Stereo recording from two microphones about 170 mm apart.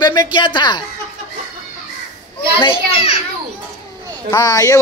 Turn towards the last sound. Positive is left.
turn(degrees=20)  # may be behind; listen again after turning